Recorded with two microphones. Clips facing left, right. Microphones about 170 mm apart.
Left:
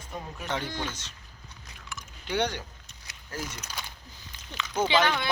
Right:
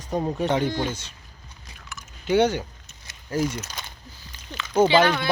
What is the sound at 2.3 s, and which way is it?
Speech, 5° right (ahead or behind).